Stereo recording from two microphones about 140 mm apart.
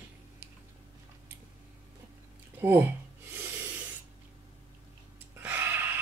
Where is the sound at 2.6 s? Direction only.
15° right (ahead or behind).